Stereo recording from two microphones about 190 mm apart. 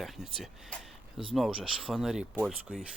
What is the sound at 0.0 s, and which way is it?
Speech, centre (ahead or behind).